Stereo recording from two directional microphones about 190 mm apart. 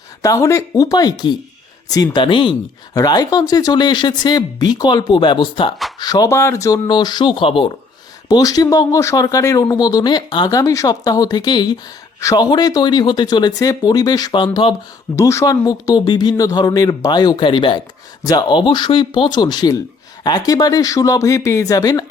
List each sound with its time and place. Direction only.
0.2 s speech: 15° left (ahead or behind)